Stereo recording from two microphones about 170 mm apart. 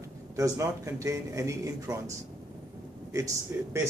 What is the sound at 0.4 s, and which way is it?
Speech, 15° right (ahead or behind).